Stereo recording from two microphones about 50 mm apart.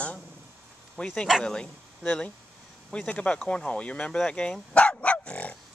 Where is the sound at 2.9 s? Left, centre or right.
Left.